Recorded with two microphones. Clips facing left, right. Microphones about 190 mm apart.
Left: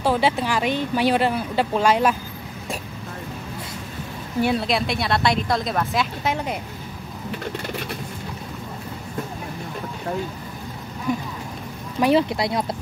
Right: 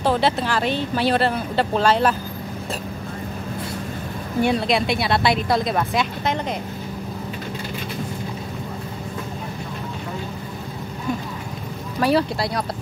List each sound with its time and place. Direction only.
0.0 s speech: 10° left (ahead or behind)
4.4 s speech: 5° left (ahead or behind)
12.0 s speech: 20° left (ahead or behind)